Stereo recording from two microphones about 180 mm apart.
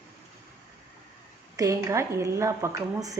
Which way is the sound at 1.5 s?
20° right (ahead or behind).